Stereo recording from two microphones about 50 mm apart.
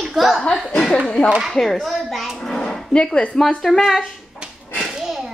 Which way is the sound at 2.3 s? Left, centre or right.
Centre.